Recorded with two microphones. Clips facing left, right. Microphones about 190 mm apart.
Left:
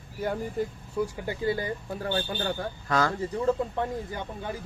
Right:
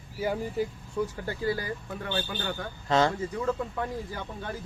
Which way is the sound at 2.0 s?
35° left (ahead or behind).